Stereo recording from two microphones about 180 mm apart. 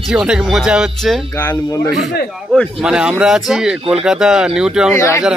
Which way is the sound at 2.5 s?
Centre (ahead or behind).